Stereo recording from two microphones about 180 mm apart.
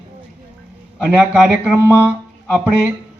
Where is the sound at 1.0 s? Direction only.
10° right (ahead or behind).